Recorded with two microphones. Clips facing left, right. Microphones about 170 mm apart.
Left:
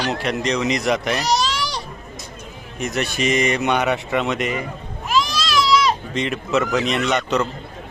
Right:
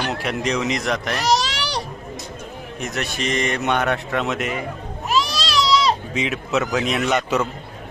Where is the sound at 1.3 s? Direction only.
85° right.